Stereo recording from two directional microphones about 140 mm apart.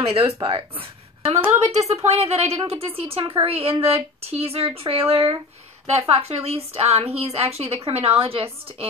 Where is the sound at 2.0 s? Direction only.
50° right (ahead or behind).